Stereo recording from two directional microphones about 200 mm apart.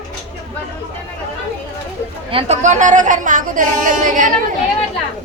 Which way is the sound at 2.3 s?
35° right (ahead or behind).